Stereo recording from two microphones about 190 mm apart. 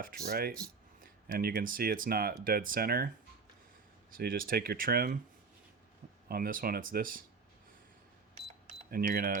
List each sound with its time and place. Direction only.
0.0 s speech: 50° right (ahead or behind)
4.1 s speech: 50° right (ahead or behind)
6.2 s speech: 50° right (ahead or behind)
8.4 s cash register: 35° right (ahead or behind)
8.9 s speech: 50° right (ahead or behind)